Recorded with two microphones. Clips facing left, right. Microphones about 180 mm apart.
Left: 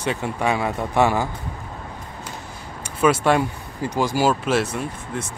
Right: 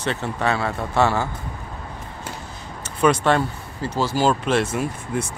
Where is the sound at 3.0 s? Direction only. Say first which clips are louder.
Even; 10° left (ahead or behind).